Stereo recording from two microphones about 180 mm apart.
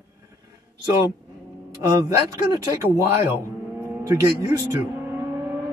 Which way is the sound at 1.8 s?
20° right (ahead or behind).